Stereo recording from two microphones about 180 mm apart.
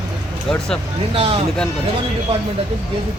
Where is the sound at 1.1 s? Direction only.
30° right (ahead or behind).